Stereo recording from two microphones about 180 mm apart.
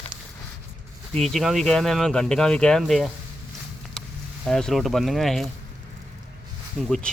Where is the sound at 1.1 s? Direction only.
Centre (ahead or behind).